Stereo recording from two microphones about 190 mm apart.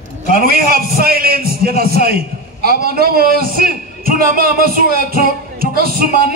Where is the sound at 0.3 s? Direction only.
50° right (ahead or behind).